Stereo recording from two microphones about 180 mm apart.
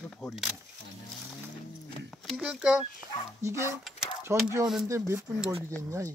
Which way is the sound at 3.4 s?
15° right (ahead or behind).